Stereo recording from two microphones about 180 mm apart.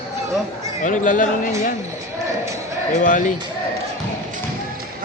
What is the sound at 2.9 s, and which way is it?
Speech, 45° left (ahead or behind).